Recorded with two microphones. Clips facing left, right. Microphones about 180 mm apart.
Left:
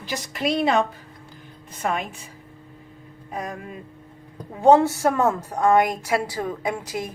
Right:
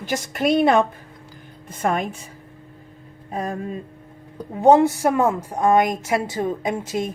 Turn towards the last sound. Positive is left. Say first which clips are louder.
# right 3 dB
turn(degrees=-25)  # may be behind; listen again after turning